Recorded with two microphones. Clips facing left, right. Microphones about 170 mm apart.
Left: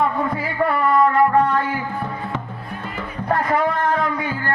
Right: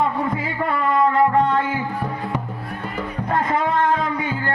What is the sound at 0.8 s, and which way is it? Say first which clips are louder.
Music: left 1 dB; 25° right (ahead or behind).